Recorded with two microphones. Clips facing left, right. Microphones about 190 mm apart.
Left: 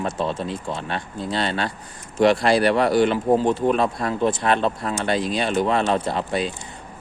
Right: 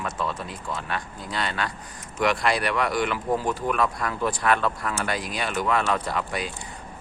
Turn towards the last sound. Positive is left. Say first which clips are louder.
# left 5 dB
turn(degrees=25)  # may be behind; listen again after turning